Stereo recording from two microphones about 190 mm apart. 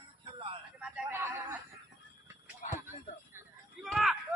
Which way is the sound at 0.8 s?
15° right (ahead or behind).